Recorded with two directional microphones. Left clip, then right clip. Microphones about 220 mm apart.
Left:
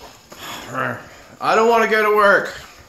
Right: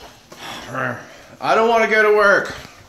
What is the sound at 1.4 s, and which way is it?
Speech, 10° left (ahead or behind).